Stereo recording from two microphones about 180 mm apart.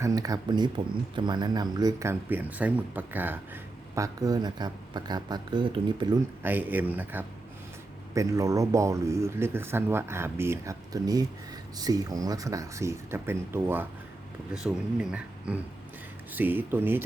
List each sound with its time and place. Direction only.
0.0 s speech: 20° right (ahead or behind)
6.4 s speech: 10° right (ahead or behind)
14.7 s speech: centre (ahead or behind)